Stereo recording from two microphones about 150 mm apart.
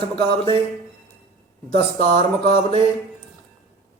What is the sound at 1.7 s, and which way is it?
Speech, 45° left (ahead or behind).